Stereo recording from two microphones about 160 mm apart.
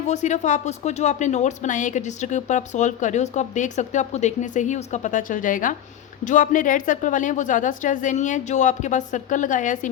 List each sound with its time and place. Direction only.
0.1 s speech: 45° left (ahead or behind)